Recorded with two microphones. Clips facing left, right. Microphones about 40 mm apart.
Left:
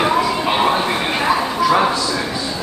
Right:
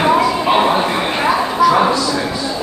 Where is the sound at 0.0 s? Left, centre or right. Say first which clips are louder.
Right 3 dB; centre.